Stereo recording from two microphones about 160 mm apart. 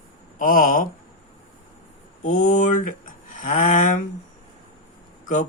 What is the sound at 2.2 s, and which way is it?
Speech, 50° left (ahead or behind).